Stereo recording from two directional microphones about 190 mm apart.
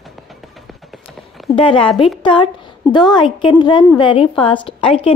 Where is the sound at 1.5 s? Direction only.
25° left (ahead or behind).